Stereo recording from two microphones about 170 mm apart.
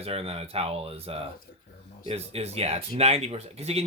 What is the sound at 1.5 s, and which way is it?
Speech, 55° left (ahead or behind).